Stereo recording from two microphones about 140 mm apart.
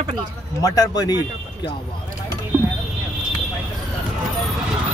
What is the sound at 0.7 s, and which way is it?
Speech, 25° left (ahead or behind).